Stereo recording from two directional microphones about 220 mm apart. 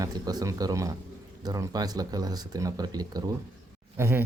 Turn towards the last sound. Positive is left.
turn(degrees=-10)  # may be behind; listen again after turning